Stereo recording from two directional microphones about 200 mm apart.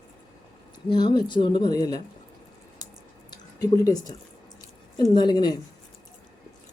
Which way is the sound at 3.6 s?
20° left (ahead or behind).